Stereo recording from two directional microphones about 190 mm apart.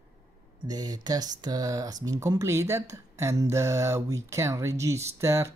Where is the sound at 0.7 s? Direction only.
20° right (ahead or behind).